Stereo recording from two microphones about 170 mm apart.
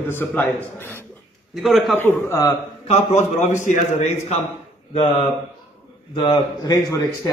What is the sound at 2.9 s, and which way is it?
A man's voice, 40° left (ahead or behind).